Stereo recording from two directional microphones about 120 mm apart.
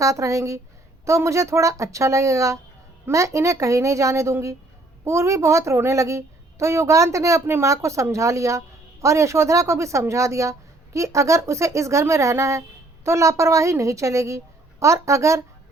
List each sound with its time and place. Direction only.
0.0 s a woman's voice: 25° right (ahead or behind)